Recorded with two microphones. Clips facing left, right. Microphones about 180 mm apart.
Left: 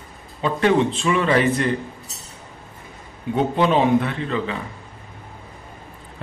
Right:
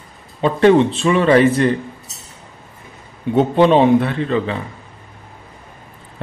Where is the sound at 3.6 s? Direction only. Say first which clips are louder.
Right 6 dB; 35° right (ahead or behind).